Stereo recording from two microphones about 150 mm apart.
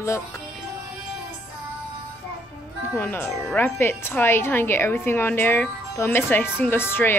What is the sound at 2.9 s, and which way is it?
Speech, 10° left (ahead or behind).